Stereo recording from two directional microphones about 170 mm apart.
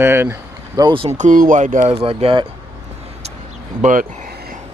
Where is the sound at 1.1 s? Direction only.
50° right (ahead or behind); by 2.4 s 30° right (ahead or behind).